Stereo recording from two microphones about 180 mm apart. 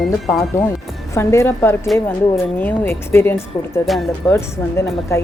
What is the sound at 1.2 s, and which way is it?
Speech, 15° left (ahead or behind).